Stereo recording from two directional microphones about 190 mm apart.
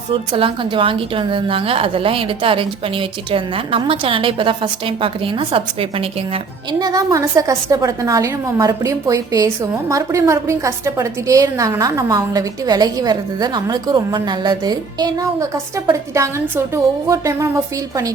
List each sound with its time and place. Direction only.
0.1 s a woman's voice: 25° right (ahead or behind)